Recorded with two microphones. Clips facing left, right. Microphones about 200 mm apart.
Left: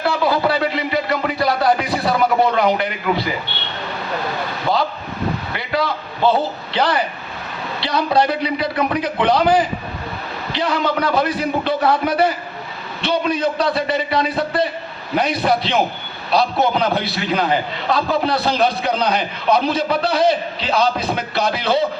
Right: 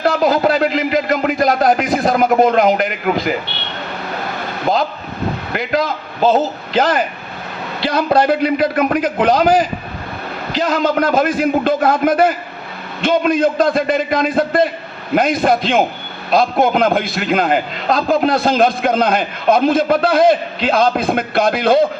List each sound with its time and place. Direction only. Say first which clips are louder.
0.0 s a sound: right 4 dB; 45° right (ahead or behind)
1.4 s speech: right 2 dB; 45° right (ahead or behind)
5.5 s a man's voice: right 6 dB; 45° right (ahead or behind)